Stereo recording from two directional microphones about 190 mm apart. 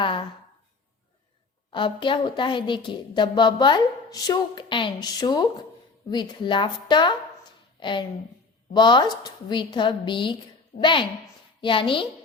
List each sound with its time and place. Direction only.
1.7 s a woman's voice: 25° left (ahead or behind)